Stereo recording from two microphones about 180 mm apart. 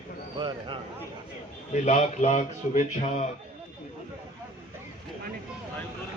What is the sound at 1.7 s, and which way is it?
Speech, 40° left (ahead or behind).